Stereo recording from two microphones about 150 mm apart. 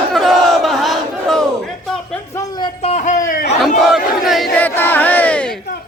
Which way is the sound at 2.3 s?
25° left (ahead or behind).